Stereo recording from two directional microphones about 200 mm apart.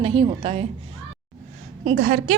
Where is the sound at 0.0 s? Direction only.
25° right (ahead or behind).